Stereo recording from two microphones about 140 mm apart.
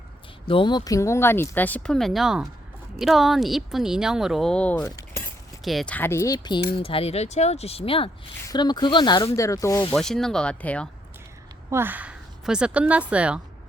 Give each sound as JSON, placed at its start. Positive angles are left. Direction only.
{"t": 0.4, "sound": "speech", "side_deg": 35}
{"t": 4.8, "sound": "chink", "side_deg": 20}
{"t": 5.6, "sound": "speech", "side_deg": 0}
{"t": 5.9, "sound": "speech", "side_deg": 15}
{"t": 6.7, "sound": "speech", "side_deg": 40}
{"t": 9.9, "sound": "speech", "side_deg": 5}
{"t": 11.7, "sound": "a woman's voice", "side_deg": -15}